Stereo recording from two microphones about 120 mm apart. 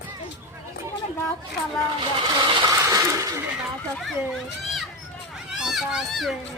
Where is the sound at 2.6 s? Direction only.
30° right (ahead or behind).